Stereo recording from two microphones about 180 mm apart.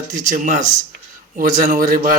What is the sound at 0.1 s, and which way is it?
Speech, 45° right (ahead or behind).